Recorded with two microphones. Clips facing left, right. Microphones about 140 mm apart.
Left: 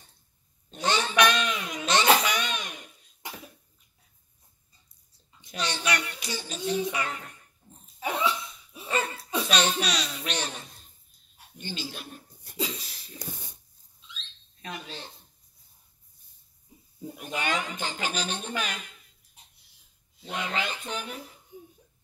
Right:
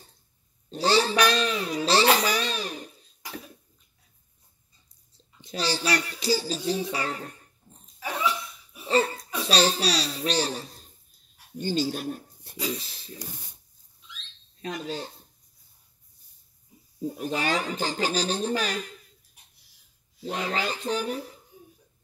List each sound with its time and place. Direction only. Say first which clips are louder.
0.7 s babbling: right 5 dB; 35° right (ahead or behind)
5.1 s a child's voice: right 4 dB; 30° right (ahead or behind)
8.0 s cough: left 1 dB; 25° left (ahead or behind)
8.8 s cough: right 6 dB; 35° right (ahead or behind)
9.5 s speech: right 4 dB; 35° right (ahead or behind)
12.7 s speech: right 6 dB; 25° right (ahead or behind)
14.6 s speech: right 7 dB; 40° right (ahead or behind)
17.1 s speech: right 3 dB; 35° right (ahead or behind)
20.2 s speech: right 3 dB; 35° right (ahead or behind)
21.5 s a sound: left 4 dB; 20° left (ahead or behind)